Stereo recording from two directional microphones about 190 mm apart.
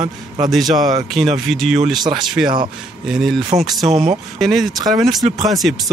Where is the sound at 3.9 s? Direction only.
40° right (ahead or behind).